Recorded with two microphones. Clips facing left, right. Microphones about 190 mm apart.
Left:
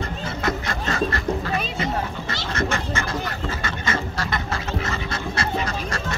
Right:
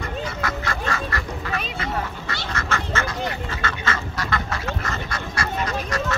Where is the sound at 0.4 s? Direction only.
20° left (ahead or behind).